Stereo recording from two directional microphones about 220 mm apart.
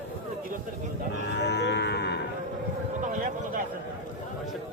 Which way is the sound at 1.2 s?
50° left (ahead or behind).